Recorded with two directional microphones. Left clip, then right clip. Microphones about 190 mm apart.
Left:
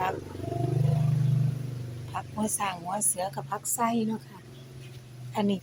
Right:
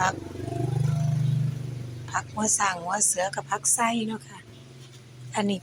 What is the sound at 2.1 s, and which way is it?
A woman's voice, centre (ahead or behind).